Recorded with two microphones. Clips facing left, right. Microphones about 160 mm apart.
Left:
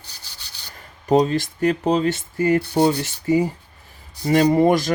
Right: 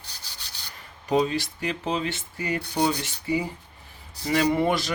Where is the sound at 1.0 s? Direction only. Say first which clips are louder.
Left 6 dB; 45° left (ahead or behind).